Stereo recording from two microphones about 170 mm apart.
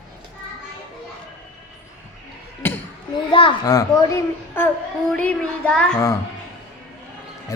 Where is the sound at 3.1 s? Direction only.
30° left (ahead or behind).